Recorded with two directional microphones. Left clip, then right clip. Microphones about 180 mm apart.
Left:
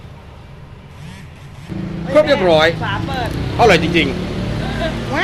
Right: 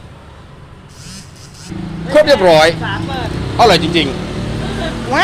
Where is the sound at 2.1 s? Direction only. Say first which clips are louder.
Right 4 dB; 40° right (ahead or behind).